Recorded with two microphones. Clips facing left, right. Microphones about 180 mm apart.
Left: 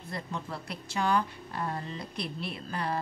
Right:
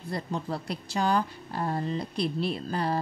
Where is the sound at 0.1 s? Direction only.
35° right (ahead or behind).